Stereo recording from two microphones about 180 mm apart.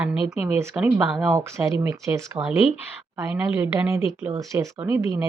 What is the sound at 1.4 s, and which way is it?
Speech, 15° right (ahead or behind).